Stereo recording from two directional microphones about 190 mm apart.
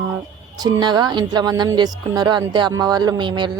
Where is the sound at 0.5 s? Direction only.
20° right (ahead or behind).